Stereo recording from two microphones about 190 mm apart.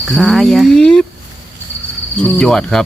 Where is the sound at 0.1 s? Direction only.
Centre (ahead or behind).